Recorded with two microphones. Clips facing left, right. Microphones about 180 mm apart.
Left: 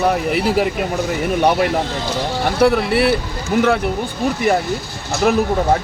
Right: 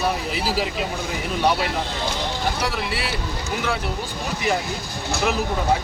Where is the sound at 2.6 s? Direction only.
60° left (ahead or behind).